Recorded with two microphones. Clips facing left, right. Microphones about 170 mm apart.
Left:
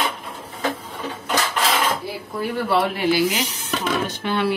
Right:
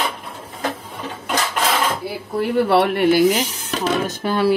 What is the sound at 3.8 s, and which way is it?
Speech, 40° right (ahead or behind).